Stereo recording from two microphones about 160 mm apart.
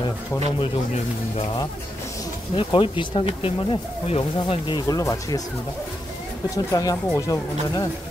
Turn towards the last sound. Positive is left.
turn(degrees=20)  # may be behind; listen again after turning